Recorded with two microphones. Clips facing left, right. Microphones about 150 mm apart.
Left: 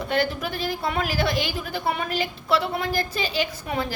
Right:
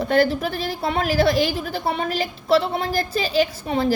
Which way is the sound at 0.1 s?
35° right (ahead or behind).